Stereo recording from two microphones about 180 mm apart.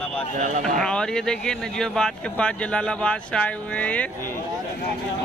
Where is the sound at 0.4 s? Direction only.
45° right (ahead or behind).